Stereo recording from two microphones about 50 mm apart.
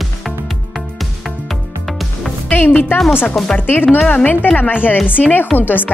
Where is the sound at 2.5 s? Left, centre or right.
Left.